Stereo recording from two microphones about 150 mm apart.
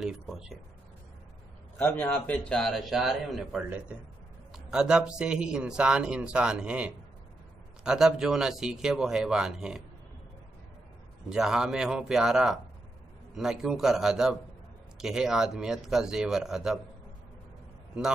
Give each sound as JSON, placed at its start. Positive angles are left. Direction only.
{"t": 0.0, "sound": "speech", "side_deg": -5}
{"t": 1.8, "sound": "speech", "side_deg": 10}
{"t": 4.6, "sound": "speech", "side_deg": -5}
{"t": 11.2, "sound": "speech", "side_deg": -5}